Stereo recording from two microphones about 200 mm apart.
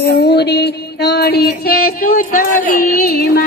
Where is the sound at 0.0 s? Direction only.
55° left (ahead or behind).